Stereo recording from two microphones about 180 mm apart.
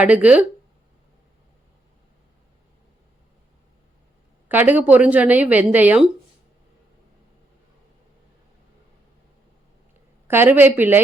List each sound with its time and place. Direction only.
0.0 s a woman's voice: 10° right (ahead or behind)
4.4 s a woman's voice: 10° right (ahead or behind)
10.2 s a woman's voice: 15° right (ahead or behind)